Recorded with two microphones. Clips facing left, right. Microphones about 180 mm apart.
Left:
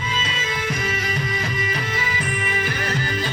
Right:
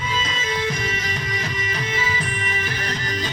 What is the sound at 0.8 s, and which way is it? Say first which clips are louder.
Music: left 2 dB; 40° left (ahead or behind).